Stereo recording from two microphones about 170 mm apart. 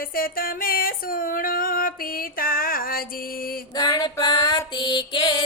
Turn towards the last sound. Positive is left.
turn(degrees=30)  # may be behind; listen again after turning